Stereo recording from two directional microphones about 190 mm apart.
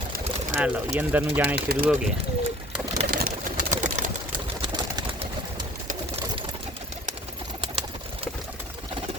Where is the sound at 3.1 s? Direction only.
50° right (ahead or behind).